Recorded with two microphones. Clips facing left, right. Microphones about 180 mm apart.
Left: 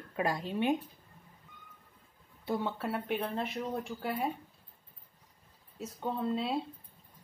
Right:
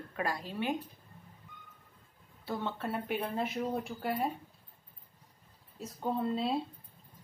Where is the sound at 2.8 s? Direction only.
Centre (ahead or behind).